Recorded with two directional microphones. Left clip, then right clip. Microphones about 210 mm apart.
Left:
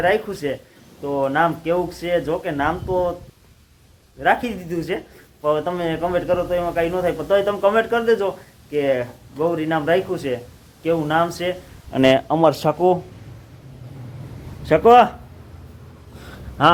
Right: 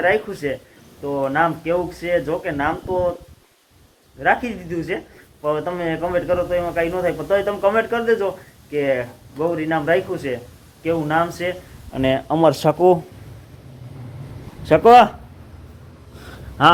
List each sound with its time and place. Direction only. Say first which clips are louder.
0.0 s speech: even; 5° left (ahead or behind)
4.2 s speech: even; 10° left (ahead or behind)
11.9 s speech: left 5 dB; 50° left (ahead or behind)
12.3 s speech: right 1 dB; 5° right (ahead or behind)
14.6 s speech: right 2 dB; 10° right (ahead or behind)
16.2 s a sound: right 2 dB; 5° right (ahead or behind)